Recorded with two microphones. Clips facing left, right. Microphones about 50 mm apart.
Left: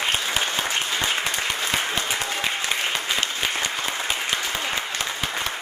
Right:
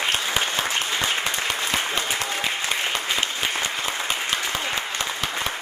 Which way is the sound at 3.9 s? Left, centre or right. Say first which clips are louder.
Even; centre.